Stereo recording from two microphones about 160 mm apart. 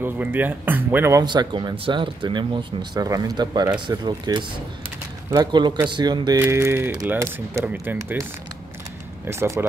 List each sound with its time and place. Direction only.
0.0 s speech: 10° right (ahead or behind)
1.2 s speech: 30° right (ahead or behind)
6.4 s speech: 15° right (ahead or behind)
9.2 s speech: 15° right (ahead or behind)